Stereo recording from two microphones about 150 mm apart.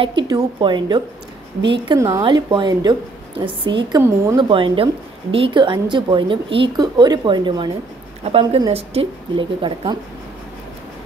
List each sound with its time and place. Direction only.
0.0 s speech: 30° right (ahead or behind)
2.0 s a woman's voice: 20° right (ahead or behind)
2.2 s speech: 30° right (ahead or behind)